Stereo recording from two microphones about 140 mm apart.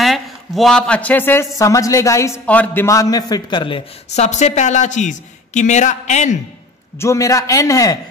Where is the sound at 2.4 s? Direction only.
10° left (ahead or behind).